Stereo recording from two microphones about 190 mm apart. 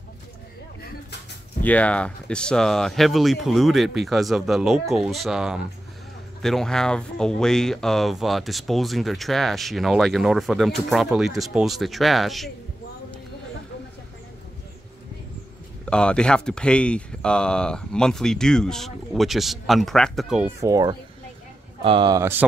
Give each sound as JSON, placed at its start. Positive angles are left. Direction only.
{"t": 1.6, "sound": "speech", "side_deg": 10}
{"t": 15.8, "sound": "speech", "side_deg": 5}
{"t": 20.6, "sound": "speech", "side_deg": -20}